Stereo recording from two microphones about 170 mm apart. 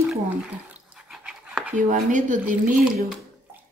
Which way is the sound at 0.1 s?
5° right (ahead or behind).